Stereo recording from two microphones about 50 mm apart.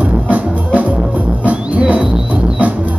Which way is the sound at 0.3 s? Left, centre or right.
Right.